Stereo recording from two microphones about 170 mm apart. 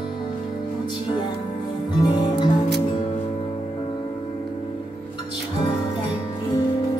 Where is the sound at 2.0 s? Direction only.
25° left (ahead or behind).